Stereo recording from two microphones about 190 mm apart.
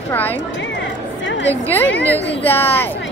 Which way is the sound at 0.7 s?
70° left (ahead or behind).